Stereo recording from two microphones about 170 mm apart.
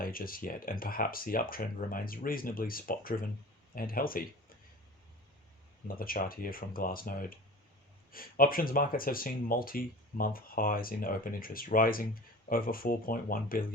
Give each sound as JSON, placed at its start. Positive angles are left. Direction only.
{"t": 0.0, "sound": "speech", "side_deg": 60}
{"t": 6.0, "sound": "speech", "side_deg": 60}